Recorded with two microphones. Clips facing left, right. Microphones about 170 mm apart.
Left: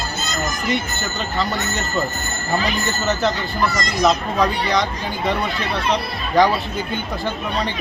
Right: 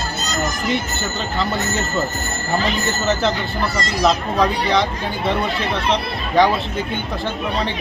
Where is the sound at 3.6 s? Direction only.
30° right (ahead or behind).